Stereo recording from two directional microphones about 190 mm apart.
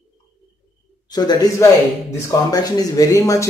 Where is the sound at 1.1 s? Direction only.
20° left (ahead or behind).